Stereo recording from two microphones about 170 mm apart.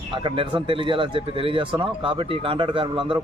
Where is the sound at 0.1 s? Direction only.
30° right (ahead or behind).